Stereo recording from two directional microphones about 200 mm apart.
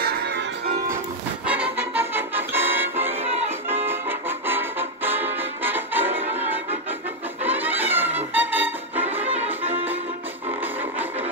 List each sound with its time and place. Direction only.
0.0 s music: 55° right (ahead or behind)
1.4 s music: 5° right (ahead or behind)